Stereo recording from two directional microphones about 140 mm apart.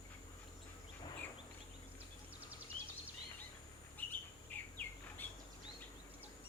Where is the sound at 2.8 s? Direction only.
40° right (ahead or behind).